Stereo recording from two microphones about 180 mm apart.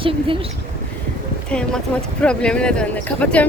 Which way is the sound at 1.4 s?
5° left (ahead or behind).